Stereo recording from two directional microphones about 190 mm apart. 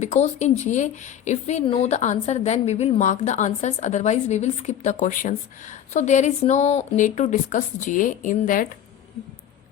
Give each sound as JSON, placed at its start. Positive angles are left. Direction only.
{"t": 0.0, "sound": "a woman's voice", "side_deg": 35}